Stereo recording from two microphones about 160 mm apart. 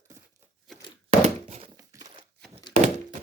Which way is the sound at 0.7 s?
Centre (ahead or behind).